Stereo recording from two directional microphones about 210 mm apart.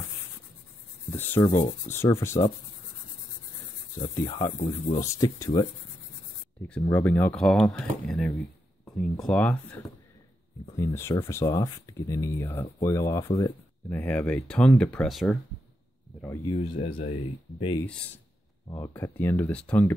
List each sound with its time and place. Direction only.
1.1 s rub: 10° left (ahead or behind)
1.7 s speech: 15° left (ahead or behind)
4.0 s speech: 20° left (ahead or behind)
6.8 s speech: 10° left (ahead or behind)
10.8 s speech: 10° left (ahead or behind)
16.2 s speech: 15° left (ahead or behind)
16.7 s speech: 40° left (ahead or behind)
18.7 s speech: 10° left (ahead or behind)